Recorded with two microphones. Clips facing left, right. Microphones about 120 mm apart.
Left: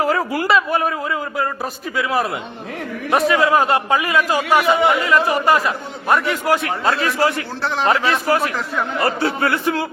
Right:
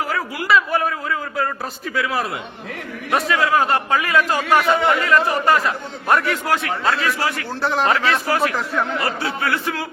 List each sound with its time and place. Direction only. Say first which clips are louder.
0.0 s a man's voice: left 6 dB; 30° left (ahead or behind)
2.0 s a man's voice: left 3 dB; 20° left (ahead or behind)
6.9 s a man's voice: left 3 dB; 30° left (ahead or behind)
7.6 s speech: right 2 dB; 5° right (ahead or behind)
8.0 s a man's voice: left 2 dB; 15° left (ahead or behind)
8.5 s speech: right 1 dB; centre (ahead or behind)
9.0 s speech: left 4 dB; 30° left (ahead or behind)